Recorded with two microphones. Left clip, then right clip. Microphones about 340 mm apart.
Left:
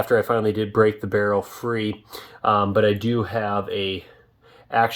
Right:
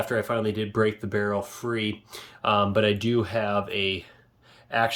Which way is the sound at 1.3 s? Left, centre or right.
Centre.